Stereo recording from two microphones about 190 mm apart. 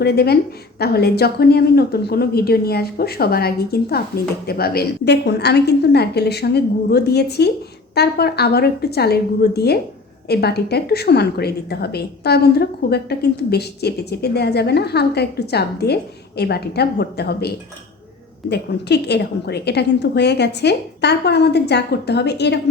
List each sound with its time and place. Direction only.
0.0 s a woman's voice: 55° left (ahead or behind)